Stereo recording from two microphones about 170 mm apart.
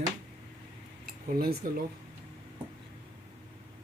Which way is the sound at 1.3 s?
60° right (ahead or behind).